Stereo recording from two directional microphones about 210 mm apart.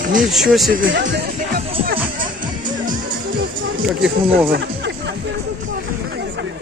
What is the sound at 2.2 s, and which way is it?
Music, 40° right (ahead or behind).